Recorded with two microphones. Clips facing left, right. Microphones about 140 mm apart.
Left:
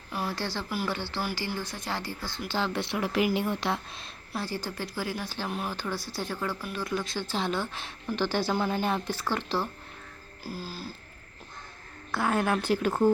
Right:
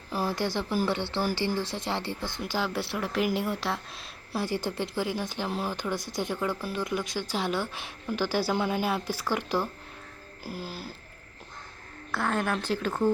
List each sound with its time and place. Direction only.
0.1 s a sound: 35° right (ahead or behind)
0.3 s speech: 20° right (ahead or behind); by 4.0 s centre (ahead or behind)
4.3 s speech: 20° right (ahead or behind)
12.1 s speech: 5° left (ahead or behind)